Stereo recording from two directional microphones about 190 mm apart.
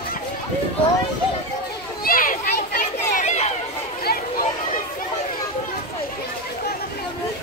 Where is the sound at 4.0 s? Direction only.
55° left (ahead or behind).